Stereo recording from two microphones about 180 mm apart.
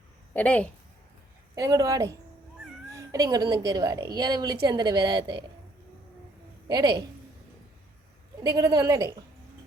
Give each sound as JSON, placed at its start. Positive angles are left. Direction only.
{"t": 0.3, "sound": "a woman's voice", "side_deg": 5}
{"t": 1.5, "sound": "a woman's voice", "side_deg": -20}
{"t": 6.7, "sound": "a woman's voice", "side_deg": -20}
{"t": 8.4, "sound": "a woman's voice", "side_deg": -20}